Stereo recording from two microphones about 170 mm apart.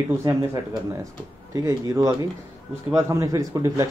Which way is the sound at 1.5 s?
20° right (ahead or behind).